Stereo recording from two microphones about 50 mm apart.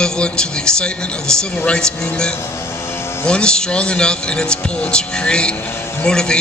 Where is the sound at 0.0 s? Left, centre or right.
Centre.